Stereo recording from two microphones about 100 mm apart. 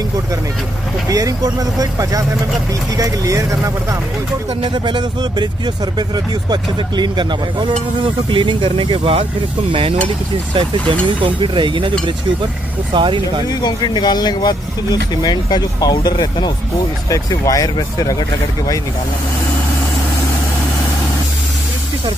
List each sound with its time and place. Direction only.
1.0 s speech: 35° right (ahead or behind)
4.6 s speech: 55° right (ahead or behind)
11.2 s speech: 55° right (ahead or behind)
12.9 s speech: 55° right (ahead or behind)
13.6 s speech: 45° left (ahead or behind)